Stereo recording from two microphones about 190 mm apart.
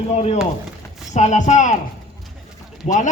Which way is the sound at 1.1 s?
40° left (ahead or behind).